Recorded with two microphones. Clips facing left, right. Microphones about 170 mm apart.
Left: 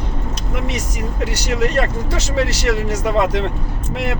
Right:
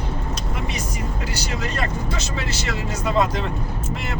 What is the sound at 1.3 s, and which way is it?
Speech, 70° left (ahead or behind).